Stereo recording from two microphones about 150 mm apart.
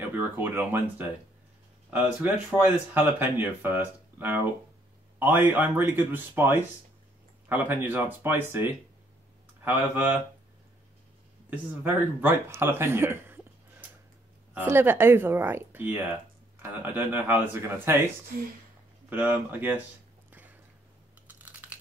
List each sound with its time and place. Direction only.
0.1 s speech: 15° right (ahead or behind)
11.8 s speech: 15° right (ahead or behind)
21.3 s a sound: 10° right (ahead or behind)